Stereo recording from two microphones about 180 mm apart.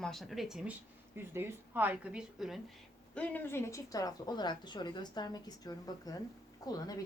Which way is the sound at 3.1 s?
10° left (ahead or behind).